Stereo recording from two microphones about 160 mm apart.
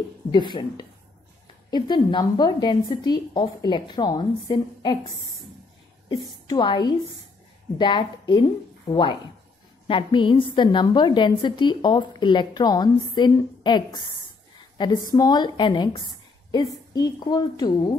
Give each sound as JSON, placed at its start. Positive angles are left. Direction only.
{"t": 0.3, "sound": "a woman's voice", "side_deg": 30}
{"t": 16.9, "sound": "a woman's voice", "side_deg": 25}